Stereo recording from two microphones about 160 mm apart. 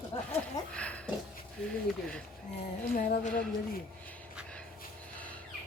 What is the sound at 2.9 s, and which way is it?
Music, 60° left (ahead or behind).